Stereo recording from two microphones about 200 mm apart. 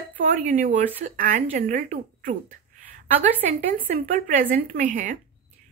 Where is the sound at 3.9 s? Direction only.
40° right (ahead or behind).